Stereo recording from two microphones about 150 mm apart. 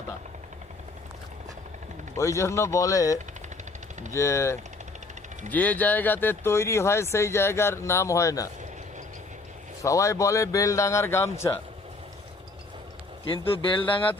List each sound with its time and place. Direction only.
2.1 s speech: 20° left (ahead or behind)
9.8 s speech: 20° left (ahead or behind)
13.2 s speech: 35° left (ahead or behind)